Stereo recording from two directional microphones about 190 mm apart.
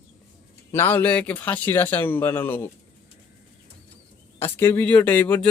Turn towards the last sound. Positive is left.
turn(degrees=10)  # may be behind; listen again after turning